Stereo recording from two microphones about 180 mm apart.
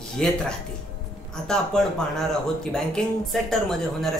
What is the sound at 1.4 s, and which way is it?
Speech, 5° left (ahead or behind).